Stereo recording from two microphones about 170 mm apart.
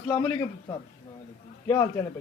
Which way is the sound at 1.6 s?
20° left (ahead or behind).